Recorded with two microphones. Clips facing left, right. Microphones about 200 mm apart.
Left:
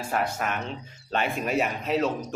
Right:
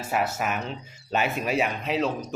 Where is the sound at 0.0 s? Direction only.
5° right (ahead or behind).